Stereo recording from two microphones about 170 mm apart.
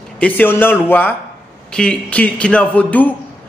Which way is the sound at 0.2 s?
10° left (ahead or behind).